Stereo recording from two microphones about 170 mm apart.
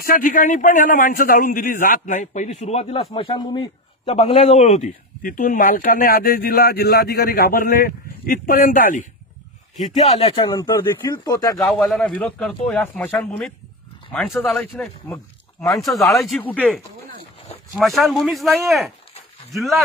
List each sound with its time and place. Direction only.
0.0 s a man's voice: 55° left (ahead or behind); by 4.1 s 25° left (ahead or behind)
4.1 s a man's voice: 35° left (ahead or behind)
5.2 s speech: 55° left (ahead or behind)
9.8 s a man's voice: 45° left (ahead or behind)
10.3 s speech: 25° left (ahead or behind)
11.5 s speech: centre (ahead or behind)